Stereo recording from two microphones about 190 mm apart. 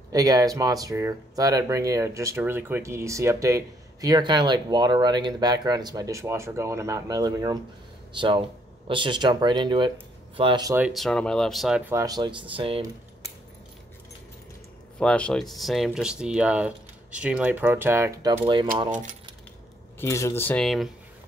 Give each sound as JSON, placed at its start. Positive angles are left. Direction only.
{"t": 0.1, "sound": "speech", "side_deg": -20}
{"t": 10.9, "sound": "speech", "side_deg": 0}
{"t": 15.0, "sound": "speech", "side_deg": 5}
{"t": 20.0, "sound": "speech", "side_deg": 15}